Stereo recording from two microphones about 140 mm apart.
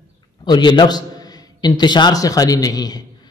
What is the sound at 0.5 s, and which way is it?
A man's voice, 30° left (ahead or behind).